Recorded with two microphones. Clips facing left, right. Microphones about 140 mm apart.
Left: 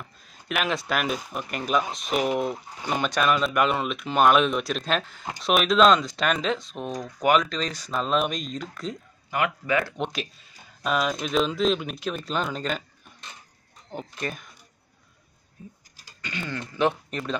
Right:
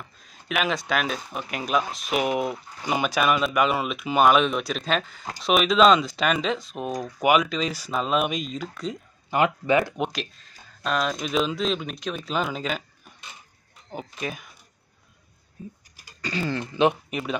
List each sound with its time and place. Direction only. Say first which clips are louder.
0.2 s speech: right 2 dB; centre (ahead or behind)
9.3 s speech: right 4 dB; 25° right (ahead or behind)
9.9 s speech: right 2 dB; 5° right (ahead or behind)
10.3 s speech: even; 5° left (ahead or behind)
16.2 s speech: right 6 dB; 35° right (ahead or behind)
16.7 s speech: right 2 dB; 15° right (ahead or behind)